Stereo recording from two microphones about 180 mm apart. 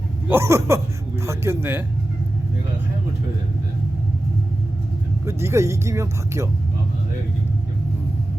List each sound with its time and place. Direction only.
0.3 s speech: 15° right (ahead or behind)
5.2 s speech: 15° right (ahead or behind)